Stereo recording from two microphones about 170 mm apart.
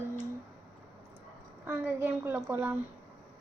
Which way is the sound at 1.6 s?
15° right (ahead or behind).